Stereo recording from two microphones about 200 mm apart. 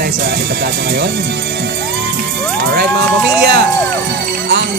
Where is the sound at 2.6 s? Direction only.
55° right (ahead or behind).